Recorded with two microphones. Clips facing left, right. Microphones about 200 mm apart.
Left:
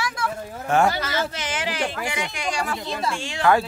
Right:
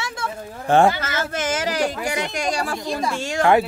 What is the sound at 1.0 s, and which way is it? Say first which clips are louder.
Speech: right 1 dB; 50° right (ahead or behind).